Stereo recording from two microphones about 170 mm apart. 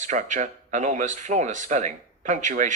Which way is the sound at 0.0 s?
45° right (ahead or behind).